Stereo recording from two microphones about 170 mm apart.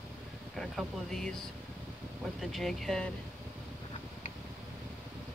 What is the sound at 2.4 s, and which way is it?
Speech, centre (ahead or behind).